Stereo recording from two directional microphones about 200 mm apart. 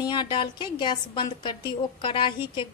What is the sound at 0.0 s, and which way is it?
A woman's voice, 20° left (ahead or behind).